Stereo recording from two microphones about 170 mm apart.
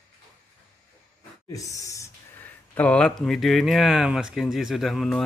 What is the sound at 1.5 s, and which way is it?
Speech, 20° left (ahead or behind).